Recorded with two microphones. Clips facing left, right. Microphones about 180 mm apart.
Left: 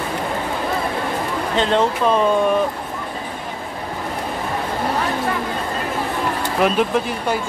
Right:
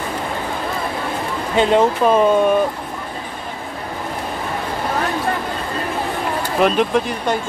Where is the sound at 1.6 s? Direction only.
10° right (ahead or behind).